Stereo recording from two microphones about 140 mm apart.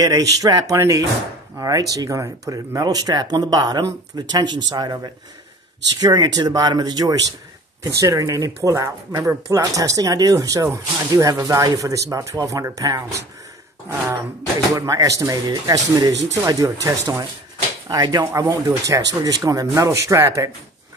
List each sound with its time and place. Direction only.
0.0 s speech: 25° right (ahead or behind)
14.8 s speech: 25° right (ahead or behind)